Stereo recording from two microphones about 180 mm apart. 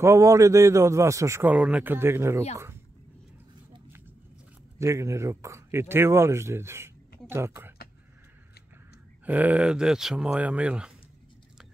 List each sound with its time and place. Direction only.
0.0 s a man's voice: 15° right (ahead or behind)
4.7 s speech: 15° right (ahead or behind)
9.2 s a man's voice: 10° right (ahead or behind)